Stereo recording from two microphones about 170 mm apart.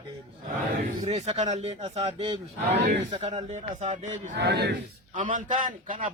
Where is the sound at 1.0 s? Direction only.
40° right (ahead or behind).